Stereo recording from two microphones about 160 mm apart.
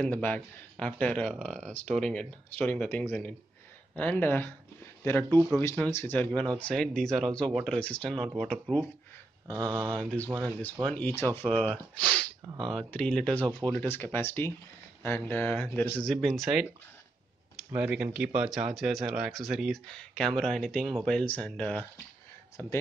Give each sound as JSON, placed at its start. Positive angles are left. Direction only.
{"t": 0.0, "sound": "speech", "side_deg": 10}
{"t": 9.5, "sound": "speech", "side_deg": -25}
{"t": 9.9, "sound": "speech", "side_deg": 10}
{"t": 17.7, "sound": "speech", "side_deg": -5}